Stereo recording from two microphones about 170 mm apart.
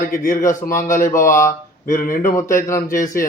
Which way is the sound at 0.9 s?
50° left (ahead or behind).